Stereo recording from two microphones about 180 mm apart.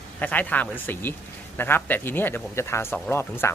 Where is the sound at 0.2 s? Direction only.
10° left (ahead or behind).